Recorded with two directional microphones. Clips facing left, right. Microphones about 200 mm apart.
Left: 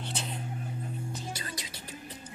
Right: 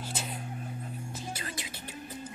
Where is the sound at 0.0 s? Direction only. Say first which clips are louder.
Even; 5° right (ahead or behind).